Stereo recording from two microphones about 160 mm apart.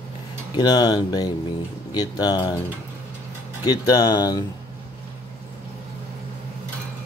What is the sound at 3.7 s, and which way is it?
Speech, 25° left (ahead or behind).